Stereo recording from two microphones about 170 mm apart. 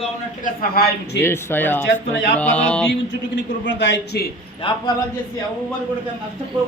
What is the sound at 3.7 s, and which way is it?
Speech, 90° left.